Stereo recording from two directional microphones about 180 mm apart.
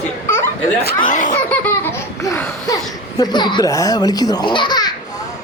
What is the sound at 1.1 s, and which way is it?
Speech, 45° left (ahead or behind).